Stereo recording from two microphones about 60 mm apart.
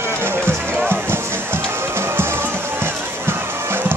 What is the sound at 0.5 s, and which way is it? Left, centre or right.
Music, right.